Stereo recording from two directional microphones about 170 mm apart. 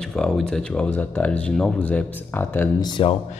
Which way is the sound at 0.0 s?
5° left (ahead or behind).